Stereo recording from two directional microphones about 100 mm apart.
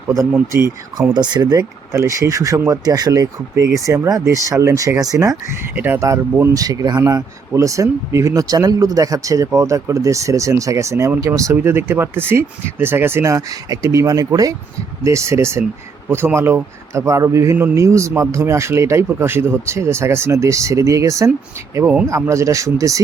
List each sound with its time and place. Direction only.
1.1 s speech: 45° right (ahead or behind)
5.7 s a man's voice: 20° right (ahead or behind)
6.4 s speech: 35° right (ahead or behind)
11.5 s a man's voice: 25° right (ahead or behind)